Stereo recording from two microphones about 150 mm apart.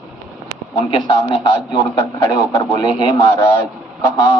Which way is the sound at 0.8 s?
35° left (ahead or behind).